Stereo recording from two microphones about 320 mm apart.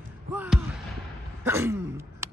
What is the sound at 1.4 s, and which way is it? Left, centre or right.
Throat clearing, centre.